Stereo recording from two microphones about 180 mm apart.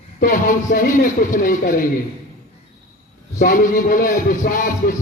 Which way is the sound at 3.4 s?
50° left (ahead or behind).